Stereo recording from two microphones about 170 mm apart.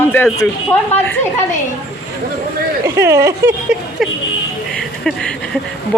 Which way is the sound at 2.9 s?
15° right (ahead or behind).